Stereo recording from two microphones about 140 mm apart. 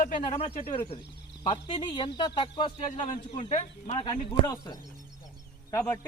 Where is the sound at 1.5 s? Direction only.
35° left (ahead or behind).